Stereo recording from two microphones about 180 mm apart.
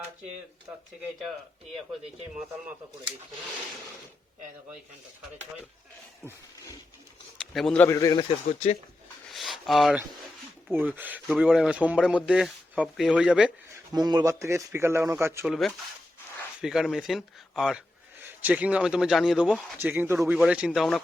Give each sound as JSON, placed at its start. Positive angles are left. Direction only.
{"t": 7.3, "sound": "a sound", "side_deg": 0}
{"t": 7.9, "sound": "a man's voice", "side_deg": 20}
{"t": 9.3, "sound": "a sound", "side_deg": 0}
{"t": 10.7, "sound": "speech", "side_deg": -10}
{"t": 13.9, "sound": "speech", "side_deg": -20}
{"t": 15.4, "sound": "speech", "side_deg": 0}